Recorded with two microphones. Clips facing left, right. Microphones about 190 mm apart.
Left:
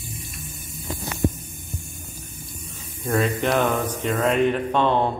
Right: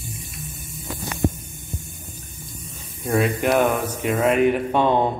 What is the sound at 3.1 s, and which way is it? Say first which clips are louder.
Mantra: right 2 dB; 10° right (ahead or behind).